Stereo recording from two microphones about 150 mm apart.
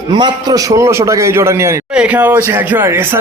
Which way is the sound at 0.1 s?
30° right (ahead or behind).